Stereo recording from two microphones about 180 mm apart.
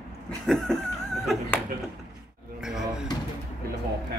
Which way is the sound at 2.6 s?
5° right (ahead or behind).